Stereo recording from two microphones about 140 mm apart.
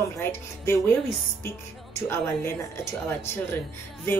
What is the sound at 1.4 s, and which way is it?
Music, 15° left (ahead or behind).